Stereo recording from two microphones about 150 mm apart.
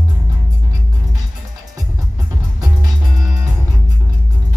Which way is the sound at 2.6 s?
25° right (ahead or behind).